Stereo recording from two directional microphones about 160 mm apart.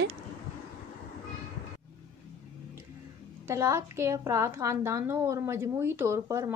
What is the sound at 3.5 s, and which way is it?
A woman's voice, 20° right (ahead or behind).